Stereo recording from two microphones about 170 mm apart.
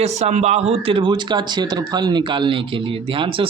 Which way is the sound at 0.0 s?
40° right (ahead or behind).